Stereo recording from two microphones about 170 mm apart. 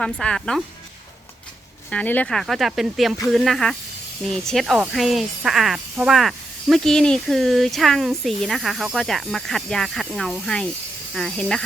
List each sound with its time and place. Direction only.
0.0 s speech: 5° left (ahead or behind)
1.9 s speech: 10° left (ahead or behind)